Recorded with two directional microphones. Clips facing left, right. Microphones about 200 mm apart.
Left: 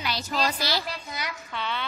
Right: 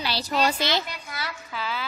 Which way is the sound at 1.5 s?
5° right (ahead or behind).